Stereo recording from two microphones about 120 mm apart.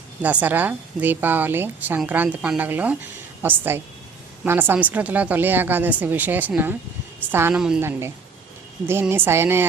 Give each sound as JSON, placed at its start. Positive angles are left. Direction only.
{"t": 0.2, "sound": "a woman's voice", "side_deg": -10}
{"t": 7.5, "sound": "a woman's voice", "side_deg": -5}
{"t": 7.8, "sound": "a woman's voice", "side_deg": -20}